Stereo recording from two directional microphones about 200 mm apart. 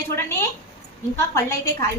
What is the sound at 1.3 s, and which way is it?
Speech, 15° left (ahead or behind).